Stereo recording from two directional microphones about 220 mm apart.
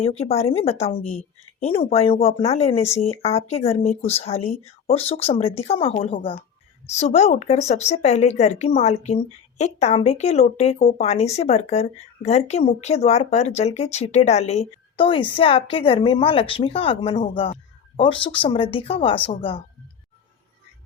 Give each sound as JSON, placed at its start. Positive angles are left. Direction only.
{"t": 0.0, "sound": "speech", "side_deg": 30}